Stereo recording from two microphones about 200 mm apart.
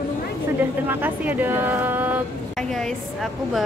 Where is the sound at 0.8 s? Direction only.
10° right (ahead or behind).